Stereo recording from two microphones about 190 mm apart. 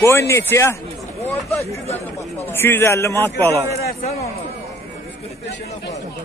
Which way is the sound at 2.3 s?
10° left (ahead or behind).